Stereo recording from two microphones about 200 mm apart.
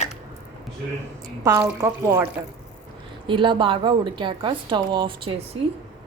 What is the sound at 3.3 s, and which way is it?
A woman's voice, 25° right (ahead or behind).